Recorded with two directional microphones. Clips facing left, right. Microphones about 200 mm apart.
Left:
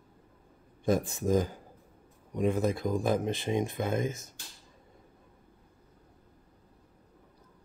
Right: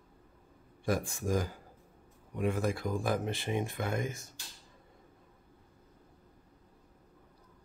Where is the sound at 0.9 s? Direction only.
20° left (ahead or behind).